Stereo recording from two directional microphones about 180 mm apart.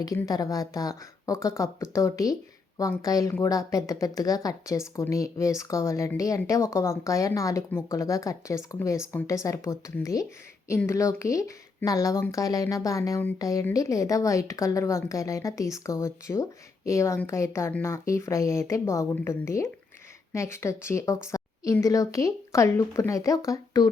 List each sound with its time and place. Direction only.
0.0 s a woman's voice: 20° left (ahead or behind)